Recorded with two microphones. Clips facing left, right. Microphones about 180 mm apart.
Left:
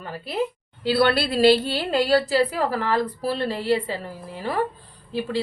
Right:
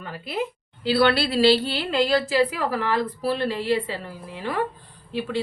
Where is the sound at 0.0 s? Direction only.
40° left (ahead or behind).